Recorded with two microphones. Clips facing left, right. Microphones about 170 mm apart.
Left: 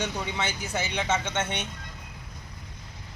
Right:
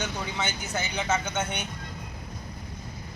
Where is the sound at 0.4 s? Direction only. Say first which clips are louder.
Left 1 dB; 30° left (ahead or behind).